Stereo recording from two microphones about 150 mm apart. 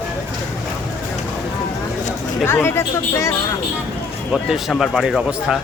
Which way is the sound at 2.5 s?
15° left (ahead or behind).